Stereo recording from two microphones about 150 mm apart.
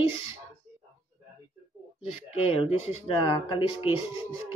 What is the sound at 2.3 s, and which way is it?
Speech, 45° left (ahead or behind).